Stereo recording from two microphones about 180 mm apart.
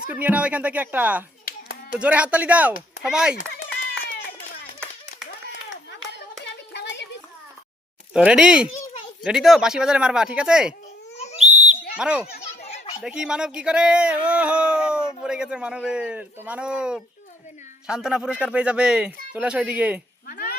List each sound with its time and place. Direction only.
0.1 s speech: 10° right (ahead or behind)
1.5 s clapping: 60° left (ahead or behind)
2.0 s speech: 5° right (ahead or behind)
3.3 s a sound: 50° left (ahead or behind)
5.5 s clapping: 90° left
6.1 s hands: 70° left (ahead or behind)
8.1 s speech: 5° right (ahead or behind)
11.4 s whistle: 40° right (ahead or behind)
11.9 s speech: 5° right (ahead or behind)
12.4 s a sound: 35° left (ahead or behind)
13.0 s speech: 5° right (ahead or behind)
20.2 s a sound: 60° left (ahead or behind)